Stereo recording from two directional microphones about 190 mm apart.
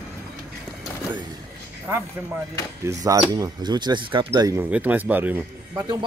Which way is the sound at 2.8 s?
15° right (ahead or behind).